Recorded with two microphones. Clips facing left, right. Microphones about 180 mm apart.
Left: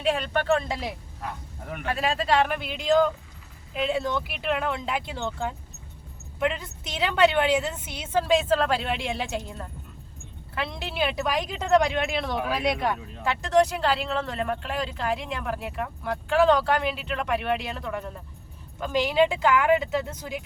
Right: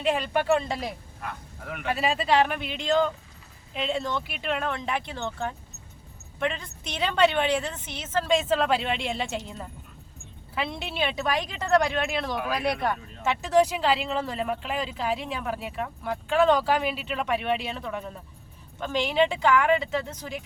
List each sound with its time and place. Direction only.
0.0 s speech: centre (ahead or behind)
1.2 s speech: 30° left (ahead or behind)
1.9 s speech: 5° right (ahead or behind)
10.5 s speech: 5° right (ahead or behind)
13.2 s speech: 5° right (ahead or behind)